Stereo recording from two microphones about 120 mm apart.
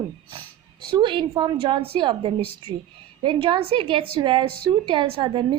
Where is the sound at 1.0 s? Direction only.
45° right (ahead or behind).